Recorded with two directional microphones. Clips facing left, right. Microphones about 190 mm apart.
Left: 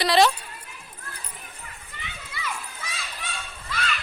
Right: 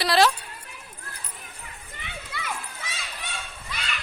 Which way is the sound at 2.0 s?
55° right (ahead or behind).